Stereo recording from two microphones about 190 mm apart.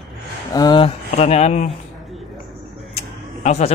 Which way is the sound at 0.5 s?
25° left (ahead or behind).